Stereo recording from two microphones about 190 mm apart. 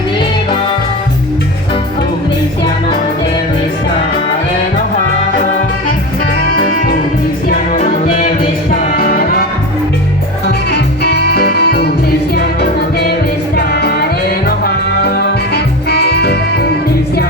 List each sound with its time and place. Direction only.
6.6 s music: 50° left (ahead or behind)
8.7 s music: 55° left (ahead or behind)
10.4 s music: 60° left (ahead or behind)